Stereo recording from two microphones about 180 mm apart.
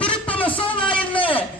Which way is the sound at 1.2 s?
30° left (ahead or behind).